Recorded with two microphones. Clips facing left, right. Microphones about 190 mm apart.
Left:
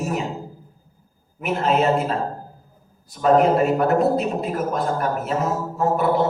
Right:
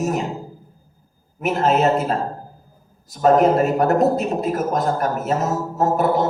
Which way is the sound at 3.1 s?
40° right (ahead or behind).